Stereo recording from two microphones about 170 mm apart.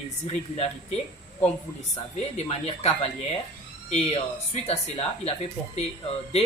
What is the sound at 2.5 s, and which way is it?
A man's voice, 35° left (ahead or behind).